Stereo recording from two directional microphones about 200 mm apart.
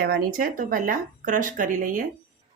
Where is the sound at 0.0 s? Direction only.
50° right (ahead or behind).